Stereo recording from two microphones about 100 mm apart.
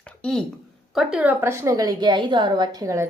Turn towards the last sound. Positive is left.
turn(degrees=-30)  # may be behind; listen again after turning